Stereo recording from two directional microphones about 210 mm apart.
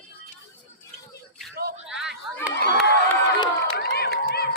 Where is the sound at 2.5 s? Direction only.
55° left (ahead or behind).